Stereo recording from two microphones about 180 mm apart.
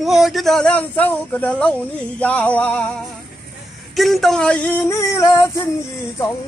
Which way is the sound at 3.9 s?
Centre (ahead or behind).